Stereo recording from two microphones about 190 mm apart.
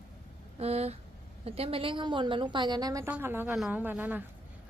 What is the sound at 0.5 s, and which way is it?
A woman's voice, 35° right (ahead or behind).